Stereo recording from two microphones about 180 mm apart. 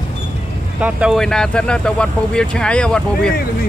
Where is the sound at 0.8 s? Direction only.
5° right (ahead or behind).